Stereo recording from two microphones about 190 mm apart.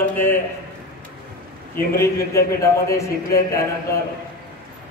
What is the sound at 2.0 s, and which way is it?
A man's voice, 15° left (ahead or behind).